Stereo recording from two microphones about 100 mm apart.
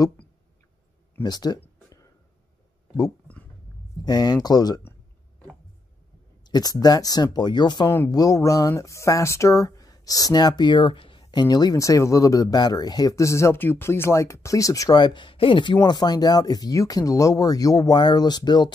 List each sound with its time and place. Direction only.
1.2 s speech: 45° left (ahead or behind)
4.0 s speech: 45° left (ahead or behind)
6.4 s speech: 40° left (ahead or behind)
8.1 s speech: 35° left (ahead or behind)
15.0 s speech: 50° left (ahead or behind)
15.9 s speech: 45° left (ahead or behind)